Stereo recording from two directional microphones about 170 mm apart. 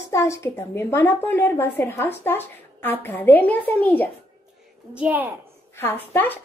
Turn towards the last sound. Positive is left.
turn(degrees=10)  # may be behind; listen again after turning